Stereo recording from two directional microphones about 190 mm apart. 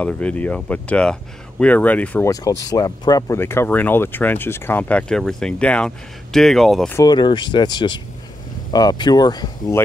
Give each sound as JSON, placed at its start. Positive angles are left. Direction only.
{"t": 0.0, "sound": "speech", "side_deg": 5}
{"t": 7.0, "sound": "speech", "side_deg": 20}